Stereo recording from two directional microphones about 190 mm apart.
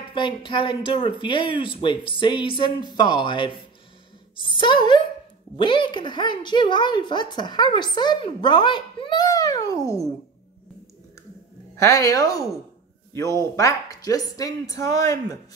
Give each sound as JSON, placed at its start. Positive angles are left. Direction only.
{"t": 0.1, "sound": "a woman's voice", "side_deg": 25}
{"t": 11.8, "sound": "speech", "side_deg": 15}